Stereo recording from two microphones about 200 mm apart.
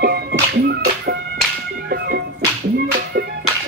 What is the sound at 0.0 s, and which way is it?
Music, 50° right (ahead or behind).